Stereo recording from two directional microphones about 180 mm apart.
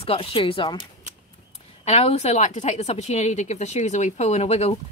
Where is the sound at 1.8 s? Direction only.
35° left (ahead or behind).